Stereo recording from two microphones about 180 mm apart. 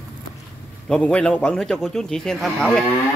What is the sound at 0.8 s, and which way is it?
Speech, 5° left (ahead or behind).